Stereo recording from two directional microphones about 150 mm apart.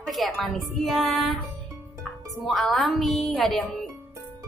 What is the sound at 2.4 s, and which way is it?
A woman's voice, centre (ahead or behind).